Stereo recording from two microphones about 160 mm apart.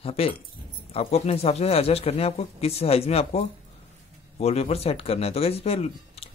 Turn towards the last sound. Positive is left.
turn(degrees=40)  # may be behind; listen again after turning